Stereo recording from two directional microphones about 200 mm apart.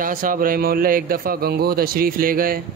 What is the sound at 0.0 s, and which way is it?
A man's voice, 45° right (ahead or behind).